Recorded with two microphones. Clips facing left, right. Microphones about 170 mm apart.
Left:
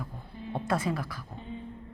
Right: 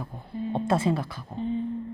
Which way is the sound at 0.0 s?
25° right (ahead or behind).